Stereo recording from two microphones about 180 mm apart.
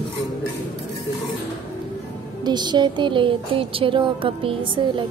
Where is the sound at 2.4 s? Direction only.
25° right (ahead or behind).